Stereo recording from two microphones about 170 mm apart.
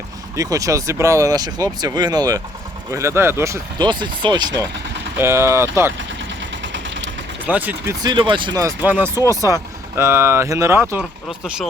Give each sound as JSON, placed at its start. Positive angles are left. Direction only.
{"t": 0.3, "sound": "speech", "side_deg": -20}
{"t": 5.1, "sound": "speech", "side_deg": -15}
{"t": 6.6, "sound": "a sound", "side_deg": -90}
{"t": 7.4, "sound": "speech", "side_deg": -10}
{"t": 8.0, "sound": "speech", "side_deg": -25}
{"t": 8.8, "sound": "speech", "side_deg": -10}